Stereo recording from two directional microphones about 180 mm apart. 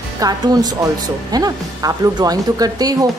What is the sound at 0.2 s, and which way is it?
Speech, 20° right (ahead or behind).